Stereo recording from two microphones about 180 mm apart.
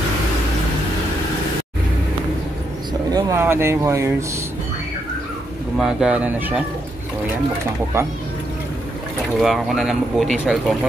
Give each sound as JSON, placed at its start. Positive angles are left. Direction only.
{"t": 3.1, "sound": "speech", "side_deg": -20}
{"t": 5.8, "sound": "speech", "side_deg": -5}
{"t": 9.4, "sound": "speech", "side_deg": 0}